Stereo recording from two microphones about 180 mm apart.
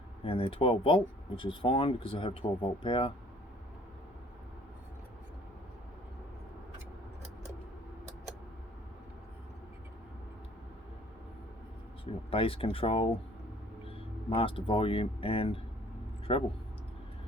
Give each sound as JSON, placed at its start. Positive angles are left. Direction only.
{"t": 0.3, "sound": "speech", "side_deg": 30}
{"t": 12.3, "sound": "speech", "side_deg": 30}